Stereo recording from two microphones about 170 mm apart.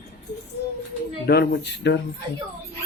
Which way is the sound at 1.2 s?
70° left (ahead or behind).